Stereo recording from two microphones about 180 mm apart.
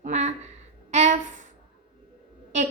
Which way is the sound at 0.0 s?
40° right (ahead or behind).